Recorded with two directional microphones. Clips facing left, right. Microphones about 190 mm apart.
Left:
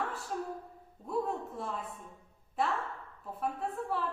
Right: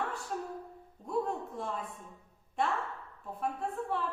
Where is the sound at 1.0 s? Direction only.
Centre (ahead or behind).